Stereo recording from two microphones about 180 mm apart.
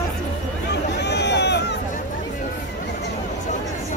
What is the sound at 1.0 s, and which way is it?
Run, 70° left (ahead or behind).